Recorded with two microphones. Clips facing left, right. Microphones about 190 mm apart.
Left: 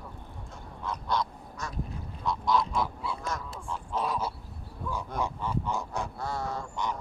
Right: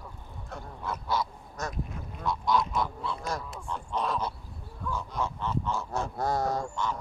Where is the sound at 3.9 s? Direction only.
10° left (ahead or behind).